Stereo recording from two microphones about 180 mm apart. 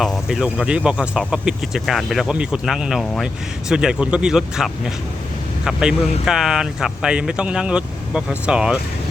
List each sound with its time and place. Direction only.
0.0 s speech: 5° right (ahead or behind)